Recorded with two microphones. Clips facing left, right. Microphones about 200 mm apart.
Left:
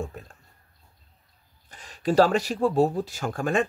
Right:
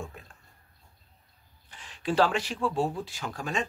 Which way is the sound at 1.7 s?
40° left (ahead or behind).